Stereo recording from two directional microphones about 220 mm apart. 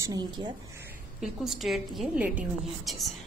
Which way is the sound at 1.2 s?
Centre (ahead or behind).